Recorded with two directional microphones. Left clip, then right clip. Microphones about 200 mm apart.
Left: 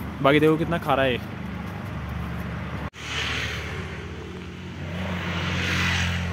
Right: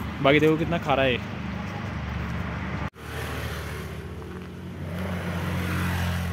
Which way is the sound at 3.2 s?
35° right (ahead or behind).